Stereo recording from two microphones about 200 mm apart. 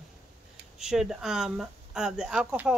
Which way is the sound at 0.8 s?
Centre (ahead or behind).